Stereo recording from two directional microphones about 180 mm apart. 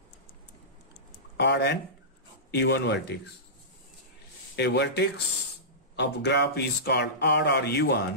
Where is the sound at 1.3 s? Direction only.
65° left (ahead or behind).